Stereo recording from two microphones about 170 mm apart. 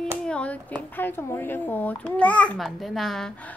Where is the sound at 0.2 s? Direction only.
5° left (ahead or behind).